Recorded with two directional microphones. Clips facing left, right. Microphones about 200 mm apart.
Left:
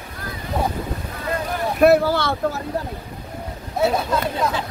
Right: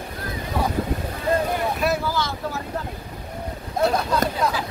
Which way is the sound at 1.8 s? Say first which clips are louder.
Left 9 dB; 60° left (ahead or behind).